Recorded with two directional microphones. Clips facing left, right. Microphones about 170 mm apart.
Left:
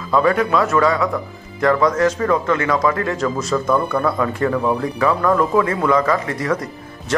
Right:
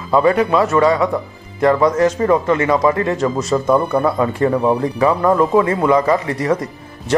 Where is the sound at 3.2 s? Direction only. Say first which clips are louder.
Right 3 dB; centre (ahead or behind).